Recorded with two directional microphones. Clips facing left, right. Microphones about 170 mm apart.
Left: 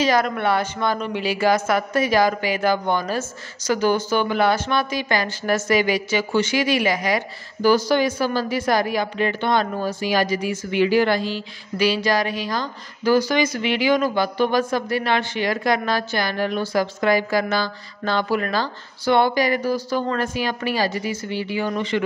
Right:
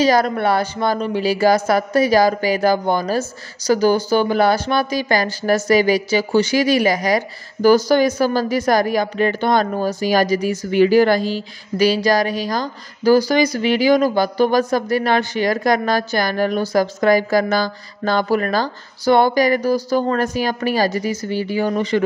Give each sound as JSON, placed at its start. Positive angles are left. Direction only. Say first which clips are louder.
{"t": 0.0, "sound": "speech", "louder": "right 4 dB", "side_deg": -35}